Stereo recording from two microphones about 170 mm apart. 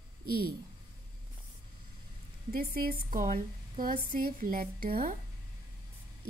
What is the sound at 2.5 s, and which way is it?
Speech, 60° right (ahead or behind).